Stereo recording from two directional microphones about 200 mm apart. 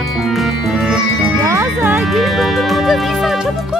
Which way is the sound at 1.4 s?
15° right (ahead or behind).